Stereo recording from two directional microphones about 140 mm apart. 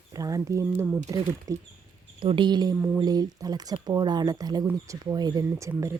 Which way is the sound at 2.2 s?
35° right (ahead or behind).